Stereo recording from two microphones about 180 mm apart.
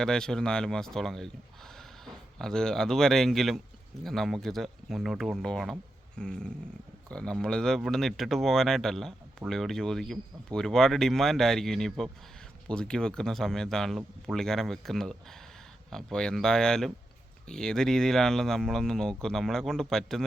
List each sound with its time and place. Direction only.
0.0 s speech: 5° left (ahead or behind)